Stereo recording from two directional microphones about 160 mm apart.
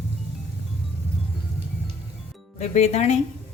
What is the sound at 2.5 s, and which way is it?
Speech, 45° left (ahead or behind).